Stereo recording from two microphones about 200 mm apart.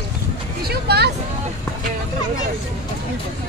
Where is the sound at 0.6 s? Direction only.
55° right (ahead or behind).